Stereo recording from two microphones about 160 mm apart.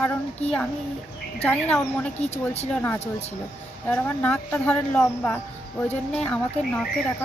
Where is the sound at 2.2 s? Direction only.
40° left (ahead or behind).